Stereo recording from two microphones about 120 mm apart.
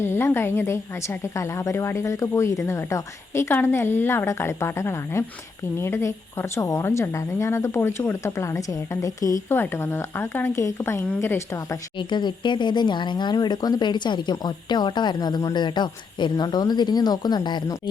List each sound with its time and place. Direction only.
0.0 s a woman's voice: 20° left (ahead or behind)
11.9 s speech: 40° left (ahead or behind)